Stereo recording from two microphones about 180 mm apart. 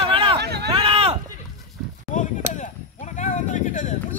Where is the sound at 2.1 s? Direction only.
45° left (ahead or behind).